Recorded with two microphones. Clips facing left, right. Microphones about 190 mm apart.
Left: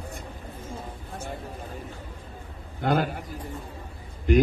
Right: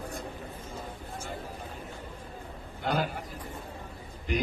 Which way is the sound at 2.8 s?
50° left (ahead or behind).